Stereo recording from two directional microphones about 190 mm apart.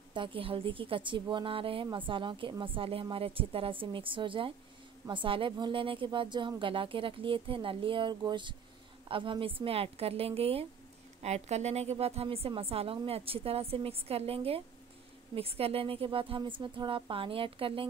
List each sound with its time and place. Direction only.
0.1 s a woman's voice: 25° right (ahead or behind)